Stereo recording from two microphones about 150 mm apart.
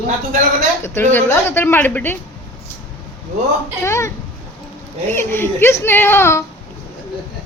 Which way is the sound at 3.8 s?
20° left (ahead or behind).